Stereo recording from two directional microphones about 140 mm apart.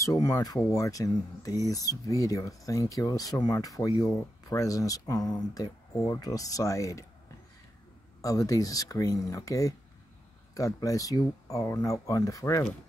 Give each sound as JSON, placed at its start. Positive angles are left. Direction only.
{"t": 0.0, "sound": "speech", "side_deg": 25}
{"t": 8.2, "sound": "speech", "side_deg": 25}